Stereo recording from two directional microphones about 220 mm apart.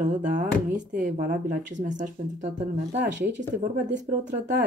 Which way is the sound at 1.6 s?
35° right (ahead or behind).